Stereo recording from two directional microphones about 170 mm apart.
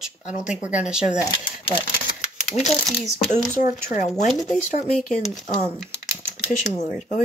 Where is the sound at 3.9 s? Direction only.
45° left (ahead or behind).